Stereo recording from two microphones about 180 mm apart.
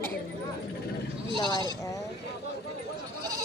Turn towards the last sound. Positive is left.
turn(degrees=25)  # may be behind; listen again after turning